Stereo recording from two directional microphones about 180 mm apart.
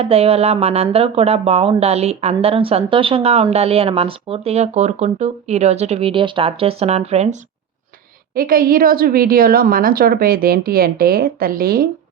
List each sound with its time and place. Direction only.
0.0 s speech: 35° right (ahead or behind)
8.4 s a woman's voice: 55° right (ahead or behind)